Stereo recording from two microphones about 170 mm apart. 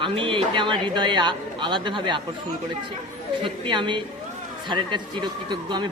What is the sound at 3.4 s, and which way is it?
A man's voice, 30° right (ahead or behind).